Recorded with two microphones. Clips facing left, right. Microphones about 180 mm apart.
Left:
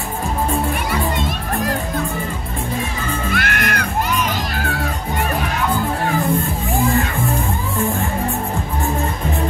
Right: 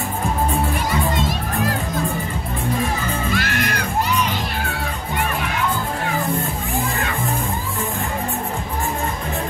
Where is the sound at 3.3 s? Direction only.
55° left (ahead or behind).